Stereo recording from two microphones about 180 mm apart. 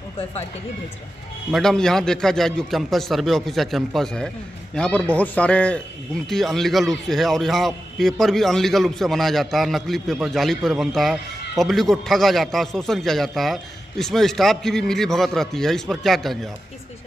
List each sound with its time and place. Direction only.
1.5 s speech: centre (ahead or behind)